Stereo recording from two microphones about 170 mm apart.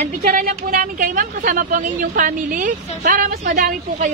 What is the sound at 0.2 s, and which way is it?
A woman's voice, 55° right (ahead or behind).